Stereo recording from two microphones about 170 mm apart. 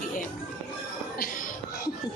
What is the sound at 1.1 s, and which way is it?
Speech, 60° left (ahead or behind).